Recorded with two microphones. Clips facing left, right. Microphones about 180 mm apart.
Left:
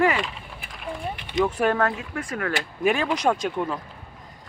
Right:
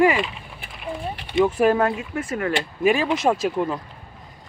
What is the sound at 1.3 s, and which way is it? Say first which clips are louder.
Speech: right 4 dB; 5° right (ahead or behind).